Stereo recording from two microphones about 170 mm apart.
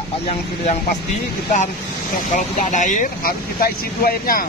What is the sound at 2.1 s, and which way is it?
Speech, 50° left (ahead or behind).